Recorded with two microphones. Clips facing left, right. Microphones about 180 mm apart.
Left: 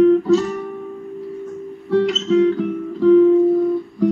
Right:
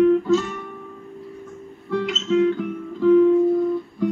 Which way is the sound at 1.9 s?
35° left (ahead or behind).